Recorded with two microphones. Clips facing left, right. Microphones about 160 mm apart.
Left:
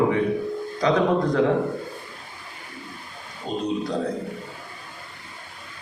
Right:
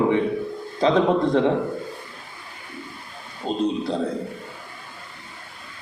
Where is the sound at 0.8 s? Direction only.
25° right (ahead or behind).